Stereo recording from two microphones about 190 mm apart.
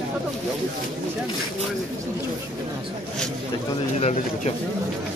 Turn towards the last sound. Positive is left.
turn(degrees=35)  # may be behind; listen again after turning